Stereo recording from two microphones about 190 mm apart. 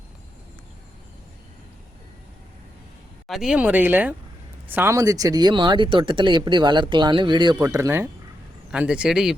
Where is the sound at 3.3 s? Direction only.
Centre (ahead or behind); by 7.5 s 25° right (ahead or behind).